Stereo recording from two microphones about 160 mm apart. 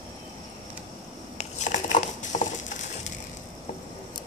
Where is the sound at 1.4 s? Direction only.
50° left (ahead or behind).